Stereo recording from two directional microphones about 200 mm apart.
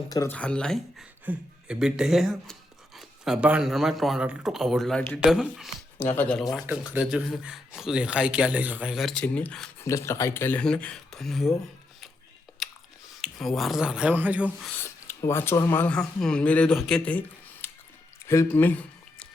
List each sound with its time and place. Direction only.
0.1 s speech: 15° left (ahead or behind)
0.3 s speech: 5° left (ahead or behind)
12.6 s chewing: centre (ahead or behind)
13.2 s speech: centre (ahead or behind)
14.8 s speech: 15° left (ahead or behind)
18.3 s a sound: 10° left (ahead or behind)